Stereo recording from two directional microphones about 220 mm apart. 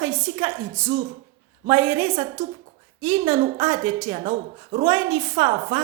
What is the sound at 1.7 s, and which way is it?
A woman's voice, 25° right (ahead or behind).